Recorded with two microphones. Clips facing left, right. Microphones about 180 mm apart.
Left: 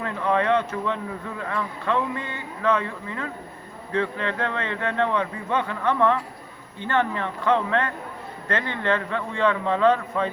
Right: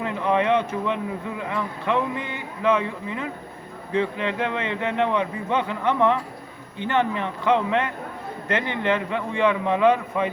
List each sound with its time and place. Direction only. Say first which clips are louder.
0.0 s a man's voice: right 1 dB; 20° right (ahead or behind)